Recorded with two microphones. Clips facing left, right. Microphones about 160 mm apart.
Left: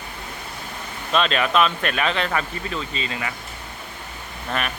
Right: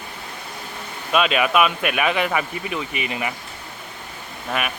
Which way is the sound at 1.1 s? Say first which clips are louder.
Right 2 dB; 10° right (ahead or behind).